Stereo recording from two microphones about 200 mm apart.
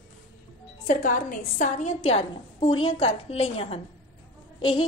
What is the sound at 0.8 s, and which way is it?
A woman's voice, 40° left (ahead or behind).